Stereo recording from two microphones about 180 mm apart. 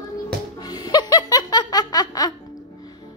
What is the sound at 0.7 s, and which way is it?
Laughter, 20° left (ahead or behind).